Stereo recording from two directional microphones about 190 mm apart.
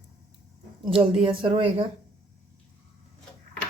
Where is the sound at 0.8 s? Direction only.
30° right (ahead or behind).